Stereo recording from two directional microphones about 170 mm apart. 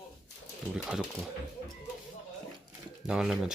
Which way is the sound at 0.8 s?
Centre (ahead or behind).